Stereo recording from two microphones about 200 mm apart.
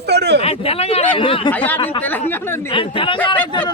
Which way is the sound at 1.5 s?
10° left (ahead or behind).